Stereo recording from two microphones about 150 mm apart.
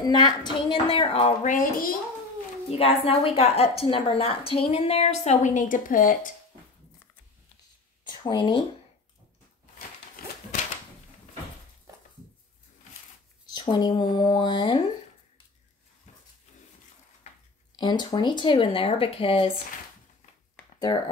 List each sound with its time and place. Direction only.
0.0 s speech: 30° left (ahead or behind)
1.4 s speech: 65° left (ahead or behind)
2.7 s a woman's voice: 40° left (ahead or behind); by 6.3 s 60° left (ahead or behind)
8.0 s speech: 30° left (ahead or behind)
10.2 s dog: 75° left (ahead or behind)
13.5 s speech: 30° left (ahead or behind)
17.7 s speech: 30° left (ahead or behind)